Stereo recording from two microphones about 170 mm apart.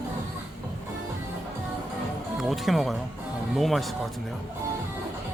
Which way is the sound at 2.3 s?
Centre (ahead or behind).